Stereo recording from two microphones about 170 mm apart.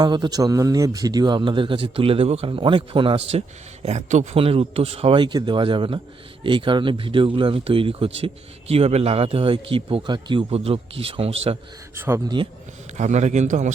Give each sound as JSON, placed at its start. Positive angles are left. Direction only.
{"t": 0.0, "sound": "speech", "side_deg": -25}
{"t": 3.8, "sound": "speech", "side_deg": -45}
{"t": 11.9, "sound": "speech", "side_deg": -15}
{"t": 13.0, "sound": "a man's voice", "side_deg": -45}